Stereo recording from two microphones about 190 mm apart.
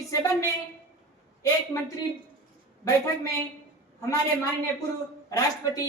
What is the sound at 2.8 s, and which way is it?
Speech, 20° left (ahead or behind).